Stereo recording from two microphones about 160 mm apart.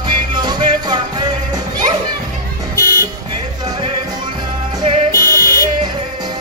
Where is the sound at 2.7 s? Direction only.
65° left (ahead or behind).